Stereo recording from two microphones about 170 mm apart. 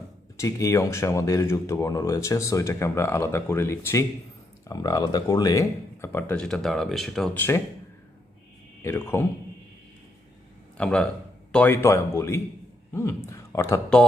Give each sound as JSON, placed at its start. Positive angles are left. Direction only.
{"t": 0.3, "sound": "speech", "side_deg": 20}
{"t": 8.8, "sound": "speech", "side_deg": 15}
{"t": 10.8, "sound": "a man's voice", "side_deg": 5}